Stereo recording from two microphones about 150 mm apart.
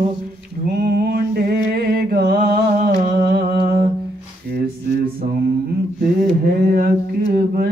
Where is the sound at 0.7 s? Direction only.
90° right.